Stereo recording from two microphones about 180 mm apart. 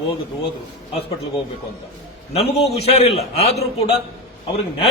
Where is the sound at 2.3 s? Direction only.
35° left (ahead or behind).